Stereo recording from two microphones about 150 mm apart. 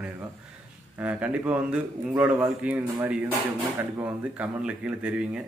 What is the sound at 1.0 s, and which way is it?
A man's voice, 10° right (ahead or behind).